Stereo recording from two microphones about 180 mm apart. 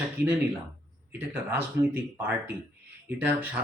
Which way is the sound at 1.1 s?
10° right (ahead or behind).